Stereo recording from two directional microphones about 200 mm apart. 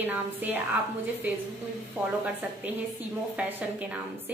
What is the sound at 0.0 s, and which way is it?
Speech, 10° right (ahead or behind).